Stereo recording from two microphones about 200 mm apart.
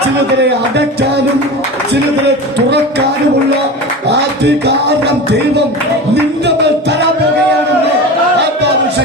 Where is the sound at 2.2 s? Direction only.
55° right (ahead or behind).